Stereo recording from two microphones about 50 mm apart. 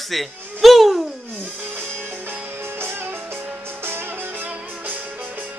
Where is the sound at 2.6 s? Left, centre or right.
Right.